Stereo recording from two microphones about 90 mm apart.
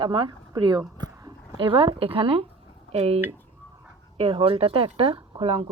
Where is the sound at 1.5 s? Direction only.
70° right (ahead or behind); by 2.4 s 90° right.